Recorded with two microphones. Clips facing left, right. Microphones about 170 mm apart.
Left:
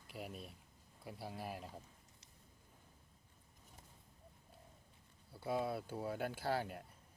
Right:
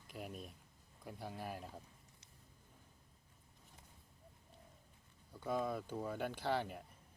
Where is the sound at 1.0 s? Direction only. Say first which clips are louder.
Even; 5° left (ahead or behind).